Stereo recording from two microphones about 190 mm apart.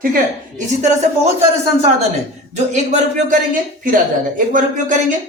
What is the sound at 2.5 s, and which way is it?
Speech, 40° right (ahead or behind).